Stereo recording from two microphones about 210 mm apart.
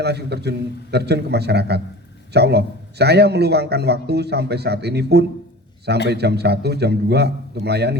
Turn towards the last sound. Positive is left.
turn(degrees=-50)  # may be behind; listen again after turning